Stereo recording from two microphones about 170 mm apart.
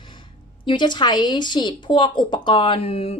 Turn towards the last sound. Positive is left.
turn(degrees=35)  # may be behind; listen again after turning